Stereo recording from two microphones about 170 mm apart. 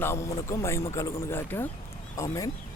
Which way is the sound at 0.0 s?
15° left (ahead or behind).